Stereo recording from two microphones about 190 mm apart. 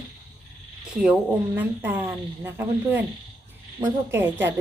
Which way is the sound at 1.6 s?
10° right (ahead or behind).